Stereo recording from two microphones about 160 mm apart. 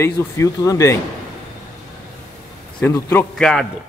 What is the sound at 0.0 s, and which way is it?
Speech, 20° left (ahead or behind).